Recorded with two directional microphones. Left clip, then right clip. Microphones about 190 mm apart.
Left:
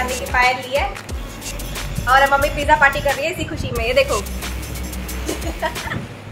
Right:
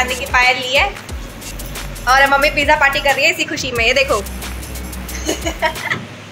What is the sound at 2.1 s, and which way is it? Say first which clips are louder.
A woman's voice: right 3 dB; 25° right (ahead or behind).